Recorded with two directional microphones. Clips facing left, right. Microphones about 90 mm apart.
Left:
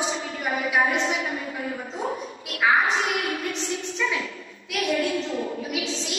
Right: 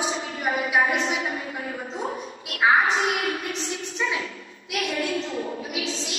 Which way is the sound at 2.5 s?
35° right (ahead or behind).